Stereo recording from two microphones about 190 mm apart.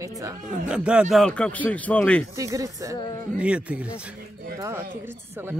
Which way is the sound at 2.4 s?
15° right (ahead or behind).